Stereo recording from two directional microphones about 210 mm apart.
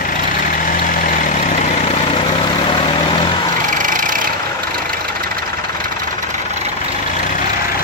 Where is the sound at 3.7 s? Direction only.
40° right (ahead or behind).